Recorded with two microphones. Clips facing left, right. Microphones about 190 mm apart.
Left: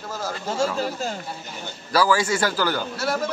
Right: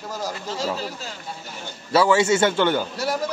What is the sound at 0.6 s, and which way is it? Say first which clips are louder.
Speech: left 5 dB; 50° left (ahead or behind).